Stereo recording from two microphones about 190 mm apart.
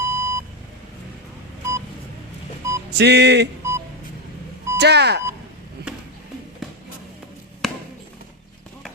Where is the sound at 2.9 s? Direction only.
60° right (ahead or behind).